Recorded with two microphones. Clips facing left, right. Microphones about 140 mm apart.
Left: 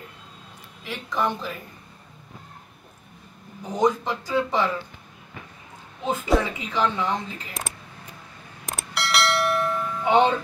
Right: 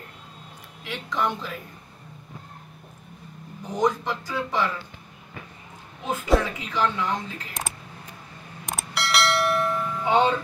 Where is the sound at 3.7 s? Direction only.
10° left (ahead or behind).